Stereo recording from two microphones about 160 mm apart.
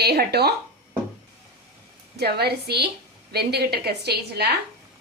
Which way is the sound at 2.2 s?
90° right.